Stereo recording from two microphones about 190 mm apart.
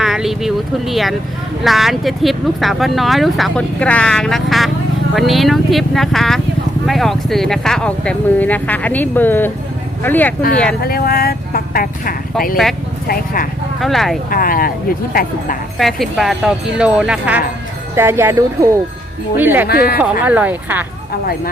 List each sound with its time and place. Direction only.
0.0 s speech: centre (ahead or behind)
10.8 s speech: 55° left (ahead or behind)
13.7 s speech: centre (ahead or behind)
14.3 s speech: 50° left (ahead or behind)
15.8 s speech: centre (ahead or behind)
19.6 s speech: 55° left (ahead or behind)
20.2 s speech: 10° right (ahead or behind)